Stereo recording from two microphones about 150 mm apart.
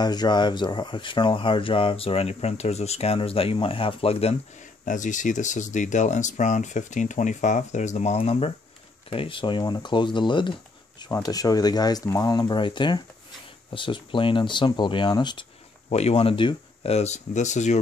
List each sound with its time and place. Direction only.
0.0 s speech: 25° left (ahead or behind)
15.9 s speech: 45° left (ahead or behind)